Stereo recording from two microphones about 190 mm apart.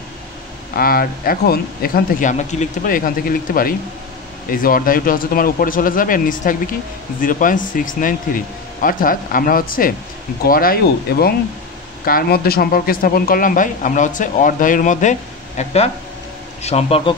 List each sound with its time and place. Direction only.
0.7 s speech: 50° left (ahead or behind); by 17.1 s 30° left (ahead or behind)